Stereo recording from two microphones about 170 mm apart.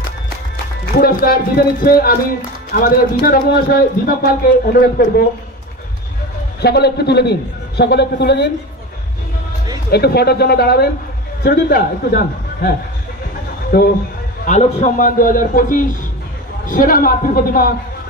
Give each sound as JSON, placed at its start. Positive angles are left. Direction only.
{"t": 0.9, "sound": "speech", "side_deg": 60}
{"t": 6.6, "sound": "a man's voice", "side_deg": 75}
{"t": 9.8, "sound": "a man's voice", "side_deg": 70}
{"t": 13.7, "sound": "speech", "side_deg": 55}
{"t": 14.4, "sound": "a man's voice", "side_deg": 45}